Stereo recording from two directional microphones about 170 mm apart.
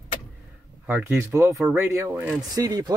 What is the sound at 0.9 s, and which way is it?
Speech, 10° right (ahead or behind).